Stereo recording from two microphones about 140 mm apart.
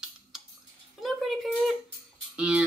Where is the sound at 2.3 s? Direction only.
10° right (ahead or behind).